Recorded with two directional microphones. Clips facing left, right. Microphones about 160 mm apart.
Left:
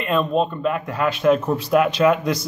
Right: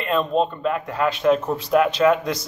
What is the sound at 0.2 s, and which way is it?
Speech, 5° left (ahead or behind).